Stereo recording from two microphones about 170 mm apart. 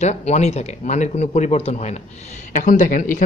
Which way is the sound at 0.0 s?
40° left (ahead or behind).